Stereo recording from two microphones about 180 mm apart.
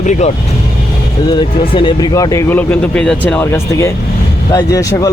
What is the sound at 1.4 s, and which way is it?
Speech, 30° left (ahead or behind).